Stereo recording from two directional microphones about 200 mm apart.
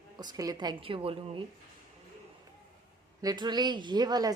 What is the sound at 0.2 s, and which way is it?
A woman's voice, 20° right (ahead or behind).